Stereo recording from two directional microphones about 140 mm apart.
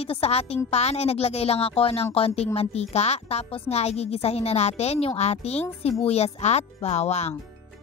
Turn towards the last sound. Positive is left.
turn(degrees=50)  # may be behind; listen again after turning